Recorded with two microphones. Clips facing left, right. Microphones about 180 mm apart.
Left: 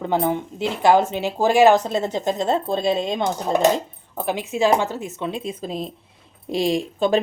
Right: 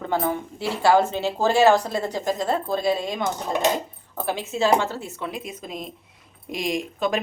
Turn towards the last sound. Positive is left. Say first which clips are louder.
# left 5 dB
turn(degrees=30)  # may be behind; listen again after turning